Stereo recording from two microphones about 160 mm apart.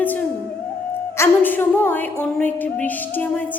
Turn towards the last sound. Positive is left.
turn(degrees=10)  # may be behind; listen again after turning